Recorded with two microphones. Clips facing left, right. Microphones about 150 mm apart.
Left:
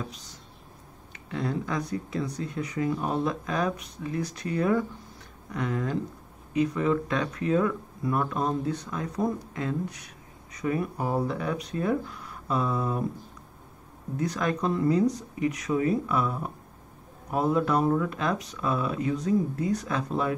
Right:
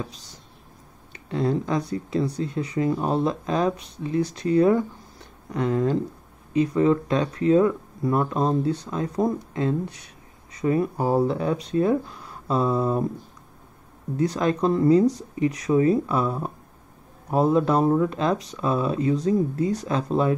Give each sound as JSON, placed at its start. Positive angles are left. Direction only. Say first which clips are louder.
{"t": 1.3, "sound": "speech", "louder": "right 6 dB", "side_deg": -30}
{"t": 14.1, "sound": "speech", "louder": "right 5 dB", "side_deg": -30}